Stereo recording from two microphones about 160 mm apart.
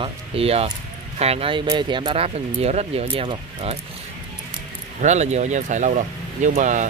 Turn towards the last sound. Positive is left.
turn(degrees=-50)  # may be behind; listen again after turning